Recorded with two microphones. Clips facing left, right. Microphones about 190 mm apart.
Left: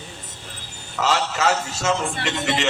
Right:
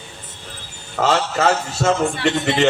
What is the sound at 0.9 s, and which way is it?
A man's voice, 45° right (ahead or behind).